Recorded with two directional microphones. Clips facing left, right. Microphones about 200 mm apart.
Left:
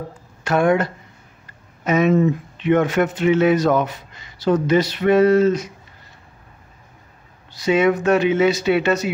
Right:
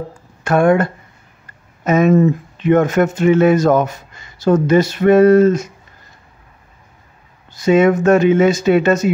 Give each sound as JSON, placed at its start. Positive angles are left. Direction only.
{"t": 0.4, "sound": "speech", "side_deg": -50}
{"t": 7.5, "sound": "speech", "side_deg": -45}